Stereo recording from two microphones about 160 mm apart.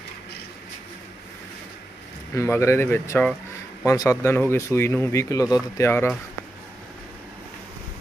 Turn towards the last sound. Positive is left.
turn(degrees=15)  # may be behind; listen again after turning